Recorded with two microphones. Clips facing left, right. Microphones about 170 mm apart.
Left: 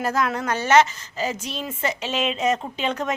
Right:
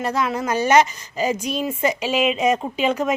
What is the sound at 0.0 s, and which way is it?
A woman's voice, centre (ahead or behind).